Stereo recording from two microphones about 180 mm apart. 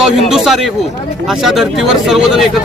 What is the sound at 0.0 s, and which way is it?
Speech, centre (ahead or behind).